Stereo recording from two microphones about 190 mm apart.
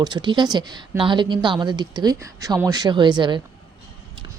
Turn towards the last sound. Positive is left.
turn(degrees=-25)  # may be behind; listen again after turning